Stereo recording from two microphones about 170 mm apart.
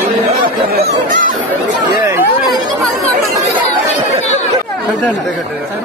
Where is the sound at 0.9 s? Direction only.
50° right (ahead or behind).